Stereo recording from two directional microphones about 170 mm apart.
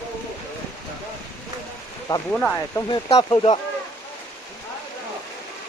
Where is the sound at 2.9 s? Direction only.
25° left (ahead or behind).